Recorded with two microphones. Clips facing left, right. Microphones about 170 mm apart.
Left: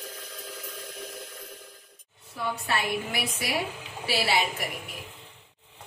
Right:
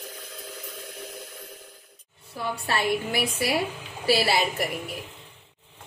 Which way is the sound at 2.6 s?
35° right (ahead or behind).